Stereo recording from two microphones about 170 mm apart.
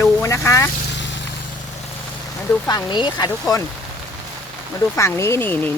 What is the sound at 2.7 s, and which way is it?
Speech, 25° left (ahead or behind).